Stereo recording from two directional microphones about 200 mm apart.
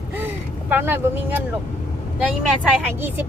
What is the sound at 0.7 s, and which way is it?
Speech, 10° right (ahead or behind).